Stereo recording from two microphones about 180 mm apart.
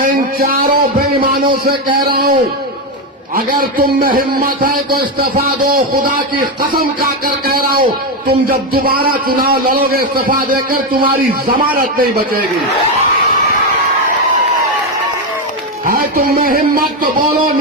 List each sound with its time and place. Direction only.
0.0 s a man's voice: 55° right (ahead or behind)
3.6 s speech: 55° right (ahead or behind)
5.7 s a man's voice: 55° right (ahead or behind)
15.9 s speech: 55° right (ahead or behind)